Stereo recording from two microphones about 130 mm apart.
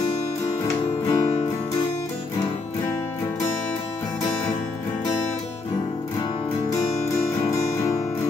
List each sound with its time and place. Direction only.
1.0 s music: 30° left (ahead or behind)